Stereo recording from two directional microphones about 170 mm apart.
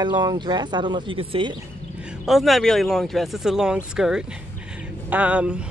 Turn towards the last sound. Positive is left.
turn(degrees=-5)  # may be behind; listen again after turning